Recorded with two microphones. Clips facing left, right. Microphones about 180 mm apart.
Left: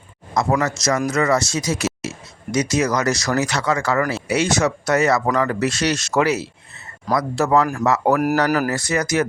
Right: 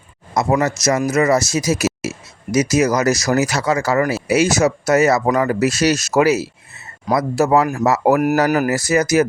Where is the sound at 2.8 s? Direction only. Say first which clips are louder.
Right 4 dB; 20° right (ahead or behind).